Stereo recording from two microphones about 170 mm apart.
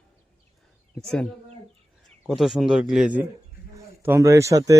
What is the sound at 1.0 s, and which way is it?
Speech, 5° left (ahead or behind).